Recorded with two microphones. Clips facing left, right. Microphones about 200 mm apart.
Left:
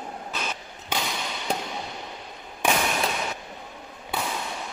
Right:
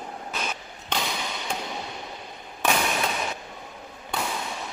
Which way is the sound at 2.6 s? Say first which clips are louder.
Left 1 dB; 15° left (ahead or behind).